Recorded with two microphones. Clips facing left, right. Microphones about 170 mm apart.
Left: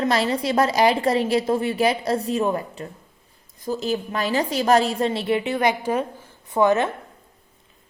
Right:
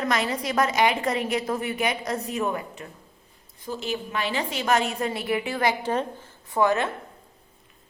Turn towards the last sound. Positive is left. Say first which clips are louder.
# left 4 dB
turn(degrees=20)  # may be behind; listen again after turning